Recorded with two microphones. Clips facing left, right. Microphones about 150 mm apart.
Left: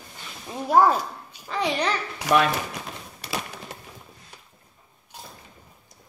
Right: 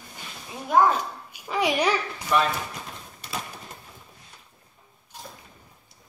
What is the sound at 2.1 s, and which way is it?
Speech, 85° left.